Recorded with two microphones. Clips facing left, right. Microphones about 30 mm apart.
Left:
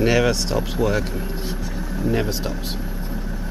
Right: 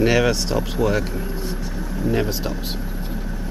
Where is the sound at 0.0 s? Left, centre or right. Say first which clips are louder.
Right 1 dB; centre.